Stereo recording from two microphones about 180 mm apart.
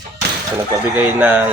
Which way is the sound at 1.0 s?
10° right (ahead or behind).